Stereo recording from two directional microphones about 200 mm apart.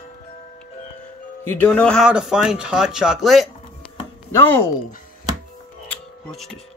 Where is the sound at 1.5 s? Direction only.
10° left (ahead or behind).